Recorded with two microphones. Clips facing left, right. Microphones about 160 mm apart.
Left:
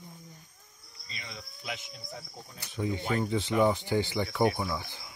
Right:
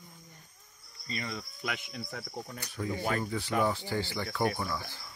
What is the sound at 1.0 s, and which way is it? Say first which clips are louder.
Cricket: right 8 dB; 50° right (ahead or behind).